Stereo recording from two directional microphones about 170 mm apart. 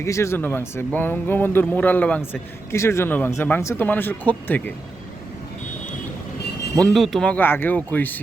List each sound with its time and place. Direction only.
0.0 s a man's voice: 15° left (ahead or behind)
6.8 s a man's voice: centre (ahead or behind)